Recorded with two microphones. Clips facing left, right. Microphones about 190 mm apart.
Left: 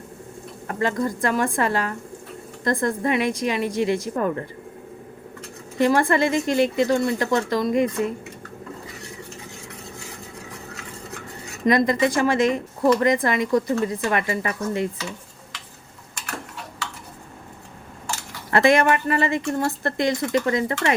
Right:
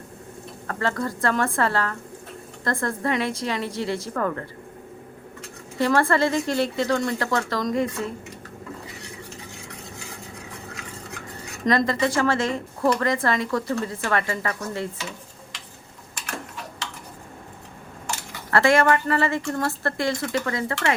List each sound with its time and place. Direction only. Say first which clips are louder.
0.7 s speech: left 3 dB; 15° left (ahead or behind)
5.8 s speech: left 2 dB; 15° left (ahead or behind)
11.6 s speech: left 3 dB; 10° left (ahead or behind)
18.5 s a woman's voice: left 1 dB; 20° left (ahead or behind)